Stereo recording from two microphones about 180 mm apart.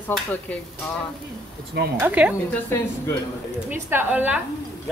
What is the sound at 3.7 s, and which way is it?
Speech, 10° right (ahead or behind).